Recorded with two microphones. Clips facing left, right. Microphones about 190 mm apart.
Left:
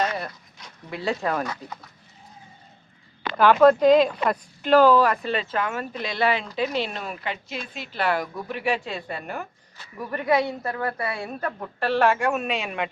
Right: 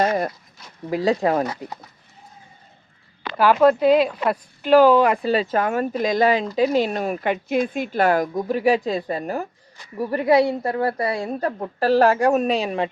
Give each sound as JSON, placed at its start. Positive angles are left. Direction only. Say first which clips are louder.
{"t": 0.0, "sound": "a sound", "louder": "right 6 dB", "side_deg": -45}
{"t": 0.9, "sound": "speech", "louder": "right 7 dB", "side_deg": -35}
{"t": 3.3, "sound": "speech", "louder": "even", "side_deg": -5}
{"t": 5.1, "sound": "speech", "louder": "right 6 dB", "side_deg": -35}